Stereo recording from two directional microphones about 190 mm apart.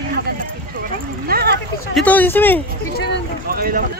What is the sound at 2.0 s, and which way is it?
Speech, 10° left (ahead or behind).